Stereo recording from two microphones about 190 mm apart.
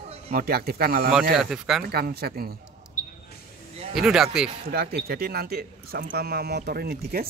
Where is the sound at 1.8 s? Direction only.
55° right (ahead or behind).